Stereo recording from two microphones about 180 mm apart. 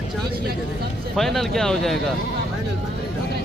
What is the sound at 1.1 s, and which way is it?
Speech, centre (ahead or behind).